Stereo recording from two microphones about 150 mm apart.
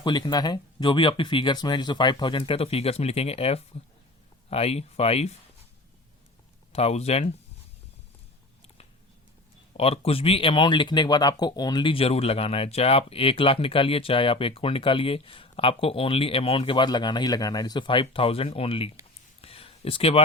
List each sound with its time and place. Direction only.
0.0 s speech: 30° left (ahead or behind)
6.7 s speech: 45° left (ahead or behind)
9.7 s speech: 40° left (ahead or behind)
19.4 s a sound: 40° left (ahead or behind)